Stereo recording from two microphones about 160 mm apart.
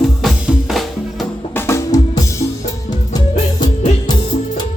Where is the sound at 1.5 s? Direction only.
15° left (ahead or behind).